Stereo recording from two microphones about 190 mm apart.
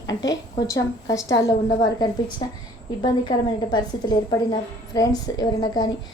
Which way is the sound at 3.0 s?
25° left (ahead or behind).